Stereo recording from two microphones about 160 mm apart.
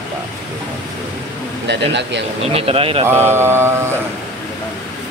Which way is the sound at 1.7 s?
90° right.